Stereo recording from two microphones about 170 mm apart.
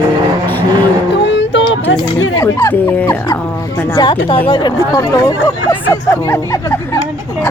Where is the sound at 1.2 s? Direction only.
90° left.